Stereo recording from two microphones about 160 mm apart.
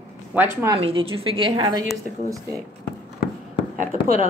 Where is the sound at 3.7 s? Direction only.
55° right (ahead or behind).